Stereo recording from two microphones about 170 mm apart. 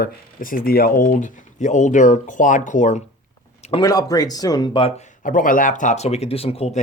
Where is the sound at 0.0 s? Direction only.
55° left (ahead or behind).